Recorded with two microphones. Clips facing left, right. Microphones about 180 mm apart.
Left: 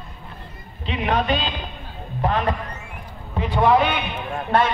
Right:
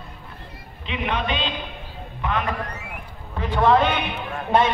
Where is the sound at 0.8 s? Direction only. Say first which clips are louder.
Left 4 dB; 40° left (ahead or behind).